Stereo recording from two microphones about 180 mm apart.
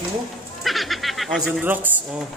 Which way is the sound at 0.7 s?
Centre (ahead or behind).